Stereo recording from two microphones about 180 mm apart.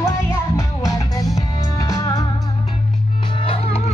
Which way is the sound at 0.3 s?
15° left (ahead or behind).